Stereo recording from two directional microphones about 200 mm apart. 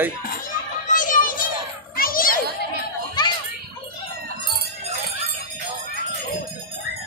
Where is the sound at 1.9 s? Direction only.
45° left (ahead or behind).